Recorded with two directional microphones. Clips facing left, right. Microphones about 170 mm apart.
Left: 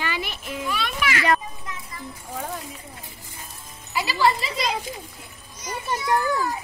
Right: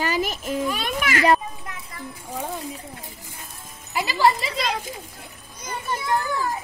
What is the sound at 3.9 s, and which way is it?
Music, 45° right (ahead or behind).